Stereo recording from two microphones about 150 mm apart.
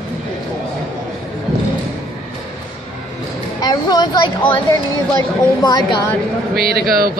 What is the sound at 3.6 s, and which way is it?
Speech, 25° left (ahead or behind).